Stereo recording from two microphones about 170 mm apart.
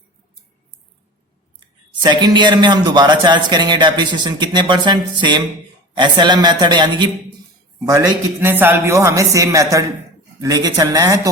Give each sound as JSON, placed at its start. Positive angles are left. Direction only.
{"t": 1.5, "sound": "speech", "side_deg": -25}
{"t": 7.9, "sound": "a man's voice", "side_deg": -15}